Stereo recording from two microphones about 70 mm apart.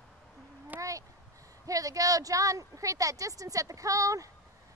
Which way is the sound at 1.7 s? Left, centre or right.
Right.